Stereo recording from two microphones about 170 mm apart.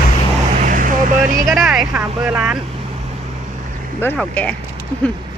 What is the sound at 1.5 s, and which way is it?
Speech, centre (ahead or behind).